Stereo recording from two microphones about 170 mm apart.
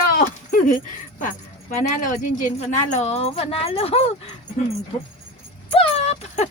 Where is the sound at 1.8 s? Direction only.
50° left (ahead or behind).